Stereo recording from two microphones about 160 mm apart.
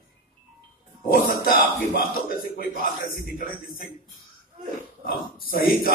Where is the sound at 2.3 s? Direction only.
65° left (ahead or behind).